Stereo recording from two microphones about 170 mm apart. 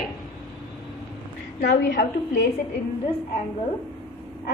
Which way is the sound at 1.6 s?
70° left (ahead or behind).